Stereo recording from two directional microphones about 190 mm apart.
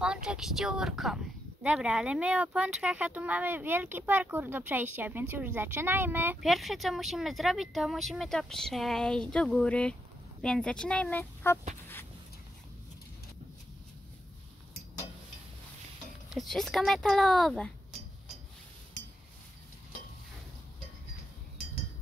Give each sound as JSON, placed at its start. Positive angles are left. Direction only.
{"t": 0.0, "sound": "speech", "side_deg": -5}
{"t": 16.3, "sound": "speech", "side_deg": 0}